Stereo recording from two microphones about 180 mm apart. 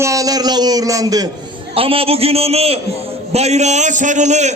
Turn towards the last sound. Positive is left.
turn(degrees=-40)  # may be behind; listen again after turning